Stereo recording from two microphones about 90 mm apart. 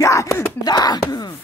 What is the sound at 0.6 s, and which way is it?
Speech, 50° left (ahead or behind).